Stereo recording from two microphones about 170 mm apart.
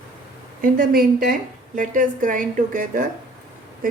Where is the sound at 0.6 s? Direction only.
55° right (ahead or behind).